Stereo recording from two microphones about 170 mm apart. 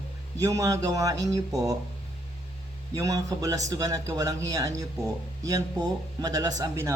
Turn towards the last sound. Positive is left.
turn(degrees=-15)  # may be behind; listen again after turning